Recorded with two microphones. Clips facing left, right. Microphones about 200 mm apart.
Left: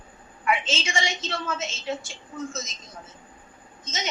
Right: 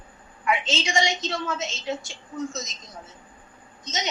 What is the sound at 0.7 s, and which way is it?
A woman's voice, 15° right (ahead or behind).